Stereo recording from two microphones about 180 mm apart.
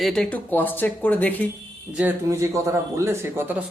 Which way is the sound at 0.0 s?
5° left (ahead or behind).